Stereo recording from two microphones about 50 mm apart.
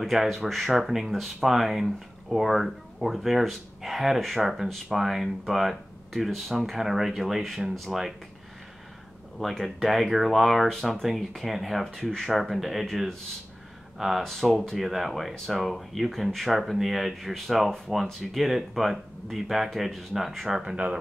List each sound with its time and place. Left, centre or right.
0.0 s speech: centre
9.4 s speech: centre
11.9 s speech: centre
12.3 s speech: centre
13.9 s speech: centre
20.7 s speech: right